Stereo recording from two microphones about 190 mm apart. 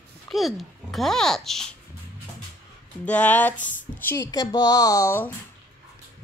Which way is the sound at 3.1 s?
10° left (ahead or behind).